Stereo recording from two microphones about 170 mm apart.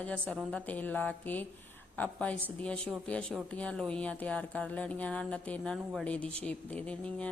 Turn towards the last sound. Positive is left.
turn(degrees=5)  # may be behind; listen again after turning